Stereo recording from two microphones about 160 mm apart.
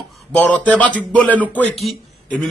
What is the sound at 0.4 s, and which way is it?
Speech, 10° left (ahead or behind).